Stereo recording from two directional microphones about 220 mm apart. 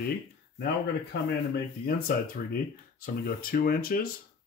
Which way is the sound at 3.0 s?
40° left (ahead or behind).